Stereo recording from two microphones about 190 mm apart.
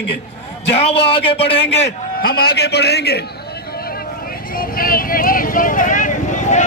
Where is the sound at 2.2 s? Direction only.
55° left (ahead or behind).